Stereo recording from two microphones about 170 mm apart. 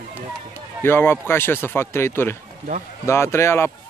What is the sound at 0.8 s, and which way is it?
Speech, 15° left (ahead or behind).